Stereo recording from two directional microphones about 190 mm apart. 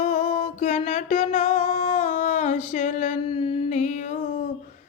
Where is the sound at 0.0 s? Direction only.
30° left (ahead or behind).